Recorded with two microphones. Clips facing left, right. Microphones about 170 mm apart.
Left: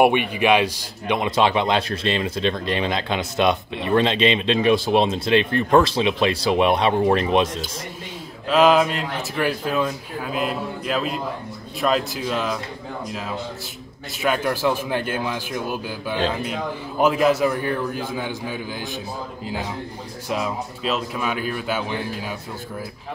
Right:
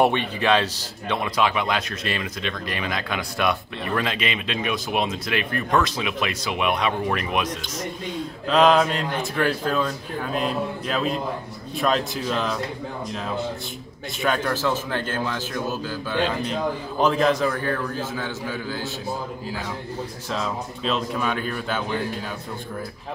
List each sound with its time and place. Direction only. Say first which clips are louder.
0.0 s a man's voice: left 3 dB; 15° left (ahead or behind); by 7.4 s 30° left (ahead or behind)
8.5 s a man's voice: left 1 dB; 5° left (ahead or behind)
14.2 s speech: left 2 dB; 10° left (ahead or behind)
20.2 s speech: left 4 dB; 10° left (ahead or behind)